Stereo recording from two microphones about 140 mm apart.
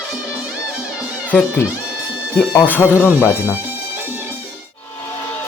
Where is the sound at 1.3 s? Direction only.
10° left (ahead or behind).